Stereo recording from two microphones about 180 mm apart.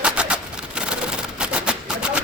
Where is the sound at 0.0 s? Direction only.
5° right (ahead or behind).